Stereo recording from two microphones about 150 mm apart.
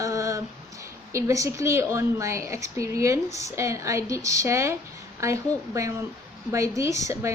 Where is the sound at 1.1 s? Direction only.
20° right (ahead or behind).